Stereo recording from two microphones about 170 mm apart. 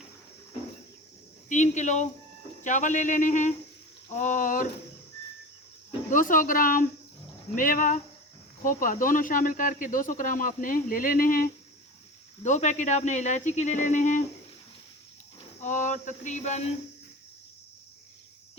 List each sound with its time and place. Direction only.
1.5 s speech: 45° left (ahead or behind)
6.1 s speech: 50° left (ahead or behind)
12.4 s speech: 45° left (ahead or behind)
15.6 s speech: 45° left (ahead or behind)